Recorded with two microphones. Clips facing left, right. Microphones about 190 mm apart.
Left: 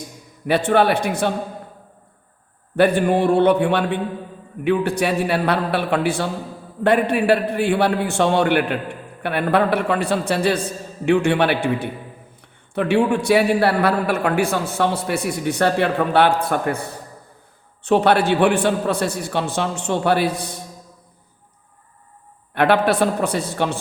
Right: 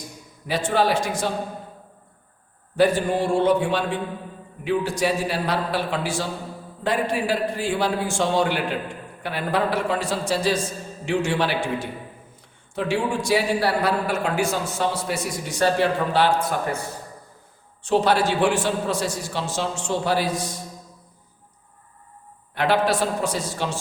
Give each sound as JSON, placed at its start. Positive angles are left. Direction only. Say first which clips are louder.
{"t": 0.4, "sound": "a man's voice", "louder": "left 5 dB", "side_deg": 60}
{"t": 2.7, "sound": "a man's voice", "louder": "left 3 dB", "side_deg": 60}
{"t": 17.8, "sound": "a man's voice", "louder": "left 4 dB", "side_deg": 60}
{"t": 22.5, "sound": "a man's voice", "louder": "left 4 dB", "side_deg": 60}